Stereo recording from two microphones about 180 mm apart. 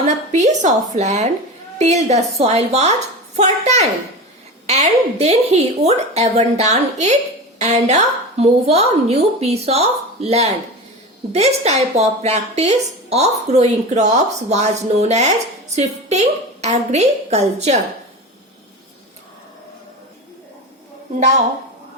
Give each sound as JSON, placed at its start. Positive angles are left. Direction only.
{"t": 0.0, "sound": "a woman's voice", "side_deg": -40}